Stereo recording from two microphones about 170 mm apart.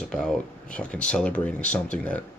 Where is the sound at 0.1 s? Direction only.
5° left (ahead or behind).